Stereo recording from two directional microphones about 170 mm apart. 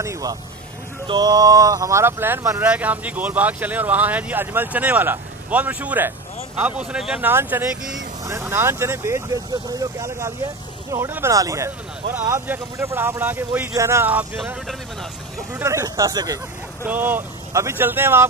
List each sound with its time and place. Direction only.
0.0 s vehicle: 20° right (ahead or behind)
1.0 s speech: 25° right (ahead or behind)
15.6 s speech: 20° right (ahead or behind)
16.8 s speech: 10° right (ahead or behind)